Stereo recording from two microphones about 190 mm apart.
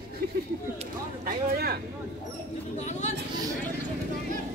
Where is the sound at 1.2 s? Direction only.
55° right (ahead or behind).